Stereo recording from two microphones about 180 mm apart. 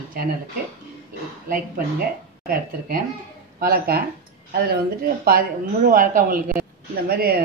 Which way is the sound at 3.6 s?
55° right (ahead or behind).